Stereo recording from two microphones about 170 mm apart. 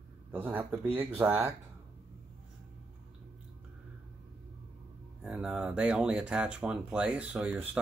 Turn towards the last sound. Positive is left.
turn(degrees=-10)  # may be behind; listen again after turning